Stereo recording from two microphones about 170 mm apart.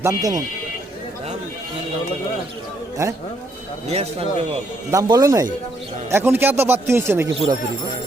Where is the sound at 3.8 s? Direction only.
40° right (ahead or behind).